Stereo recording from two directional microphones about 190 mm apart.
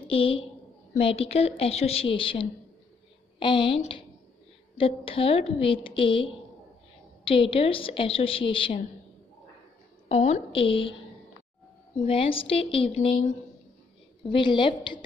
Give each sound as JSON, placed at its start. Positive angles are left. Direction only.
{"t": 0.1, "sound": "a woman's voice", "side_deg": 30}
{"t": 10.0, "sound": "a woman's voice", "side_deg": 35}
{"t": 12.0, "sound": "a woman's voice", "side_deg": 30}
{"t": 14.2, "sound": "a woman's voice", "side_deg": 25}